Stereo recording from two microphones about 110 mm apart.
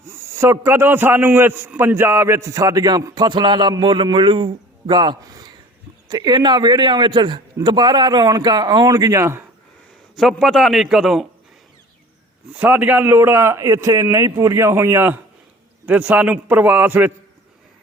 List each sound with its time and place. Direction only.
0.1 s a man's voice: 25° right (ahead or behind)
10.2 s a man's voice: centre (ahead or behind)
12.5 s a man's voice: 15° right (ahead or behind)